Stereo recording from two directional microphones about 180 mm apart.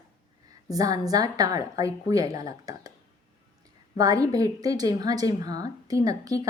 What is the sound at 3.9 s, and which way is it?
A woman's voice, 20° right (ahead or behind).